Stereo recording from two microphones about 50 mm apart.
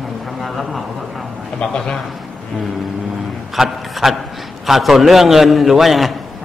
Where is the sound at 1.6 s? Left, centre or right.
Centre.